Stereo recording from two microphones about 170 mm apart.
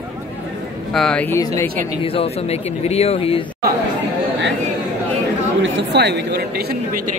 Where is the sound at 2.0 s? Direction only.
35° left (ahead or behind).